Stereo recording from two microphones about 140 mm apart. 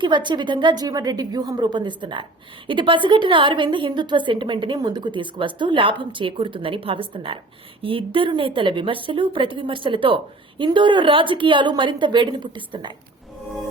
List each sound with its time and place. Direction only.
0.0 s a woman's voice: 35° right (ahead or behind)